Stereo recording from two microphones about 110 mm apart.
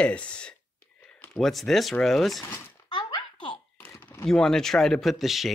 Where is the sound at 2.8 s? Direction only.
45° left (ahead or behind).